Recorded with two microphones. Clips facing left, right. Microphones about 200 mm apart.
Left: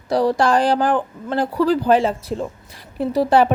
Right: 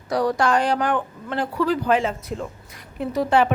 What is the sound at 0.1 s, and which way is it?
A woman's voice, 30° left (ahead or behind).